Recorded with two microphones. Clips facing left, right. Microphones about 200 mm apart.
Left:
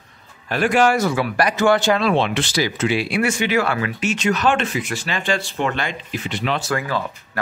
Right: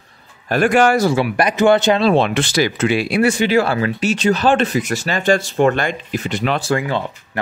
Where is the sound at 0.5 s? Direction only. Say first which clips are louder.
Right 3 dB; 50° right (ahead or behind).